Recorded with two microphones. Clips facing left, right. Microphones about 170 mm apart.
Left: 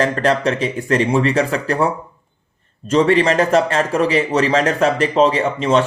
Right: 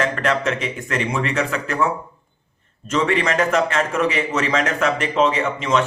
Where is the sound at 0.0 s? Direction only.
30° left (ahead or behind).